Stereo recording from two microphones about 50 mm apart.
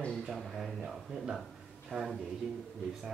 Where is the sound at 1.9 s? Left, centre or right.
Right.